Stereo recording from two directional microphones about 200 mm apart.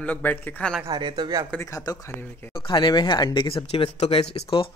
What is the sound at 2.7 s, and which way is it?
Speech, 20° left (ahead or behind).